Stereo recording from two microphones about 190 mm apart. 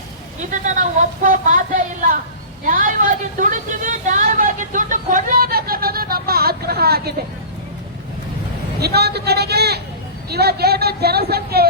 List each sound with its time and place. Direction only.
0.5 s speech: 40° right (ahead or behind)
3.3 s a sound: 45° right (ahead or behind)
8.8 s speech: 55° right (ahead or behind)